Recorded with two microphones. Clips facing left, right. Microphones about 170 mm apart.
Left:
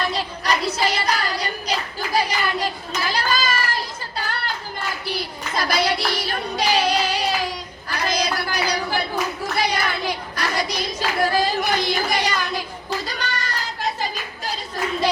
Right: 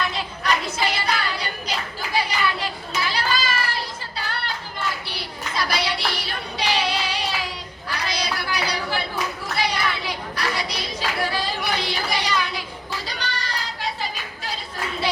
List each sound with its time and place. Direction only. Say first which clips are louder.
0.0 s child singing: left 2 dB; 35° left (ahead or behind)
5.0 s hands: left 5 dB; 45° left (ahead or behind)
7.9 s clapping: left 4 dB; 45° left (ahead or behind)
13.1 s a sound: left 2 dB; 45° left (ahead or behind)